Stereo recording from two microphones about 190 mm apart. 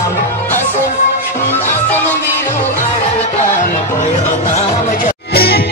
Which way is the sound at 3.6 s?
40° left (ahead or behind).